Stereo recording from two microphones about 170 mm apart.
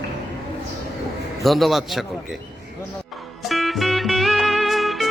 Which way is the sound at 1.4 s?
Centre (ahead or behind).